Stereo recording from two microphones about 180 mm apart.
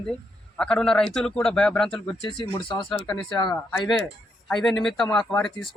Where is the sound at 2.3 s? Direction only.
25° left (ahead or behind).